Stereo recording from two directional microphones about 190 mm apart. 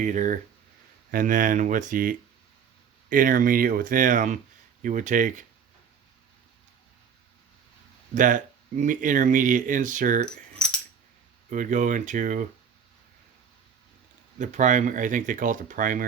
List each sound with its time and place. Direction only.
0.0 s speech: 40° right (ahead or behind)
8.1 s speech: 45° right (ahead or behind)
10.2 s keys jangling: 5° left (ahead or behind)
11.4 s speech: 40° right (ahead or behind)
14.3 s speech: 40° right (ahead or behind)